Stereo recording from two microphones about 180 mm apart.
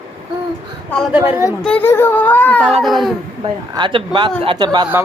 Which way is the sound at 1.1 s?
10° right (ahead or behind).